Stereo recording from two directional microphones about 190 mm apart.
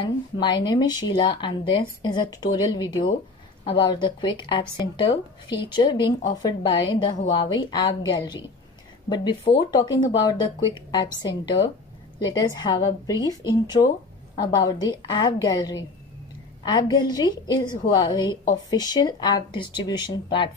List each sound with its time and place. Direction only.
0.4 s a woman's voice: 25° left (ahead or behind)